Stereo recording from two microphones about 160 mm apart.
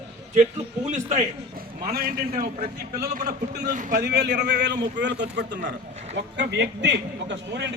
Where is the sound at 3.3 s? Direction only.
90° right.